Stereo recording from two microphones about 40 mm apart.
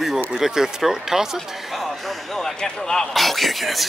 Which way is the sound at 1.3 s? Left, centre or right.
Centre.